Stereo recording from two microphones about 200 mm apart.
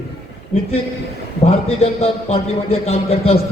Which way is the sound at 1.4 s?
30° left (ahead or behind).